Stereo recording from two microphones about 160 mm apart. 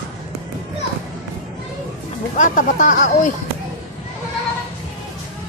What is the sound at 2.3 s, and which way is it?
Speech, 55° left (ahead or behind).